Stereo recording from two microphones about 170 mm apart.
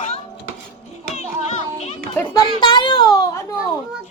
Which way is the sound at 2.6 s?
25° left (ahead or behind).